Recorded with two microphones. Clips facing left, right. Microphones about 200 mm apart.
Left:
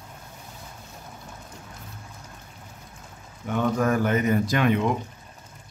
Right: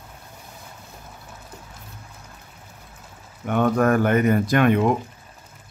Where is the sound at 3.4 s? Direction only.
60° right (ahead or behind).